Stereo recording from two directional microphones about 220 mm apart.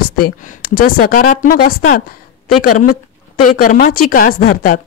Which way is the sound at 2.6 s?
40° left (ahead or behind).